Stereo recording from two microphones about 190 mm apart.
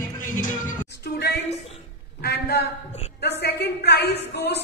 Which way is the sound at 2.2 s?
60° left (ahead or behind).